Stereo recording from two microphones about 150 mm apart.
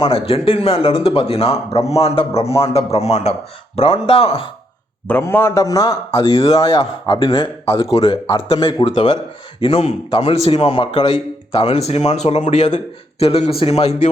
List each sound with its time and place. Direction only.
0.0 s speech: 40° left (ahead or behind)
5.0 s a man's voice: 10° left (ahead or behind); by 14.1 s 45° left (ahead or behind)